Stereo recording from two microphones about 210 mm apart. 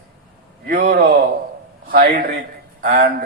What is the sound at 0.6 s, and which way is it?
A man's voice, 40° right (ahead or behind).